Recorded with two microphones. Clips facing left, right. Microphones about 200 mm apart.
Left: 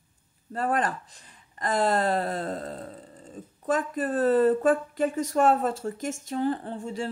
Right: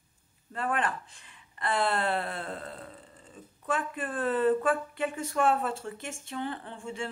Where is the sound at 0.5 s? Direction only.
40° left (ahead or behind).